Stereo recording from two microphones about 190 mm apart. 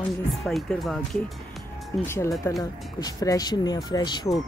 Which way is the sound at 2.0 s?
15° left (ahead or behind).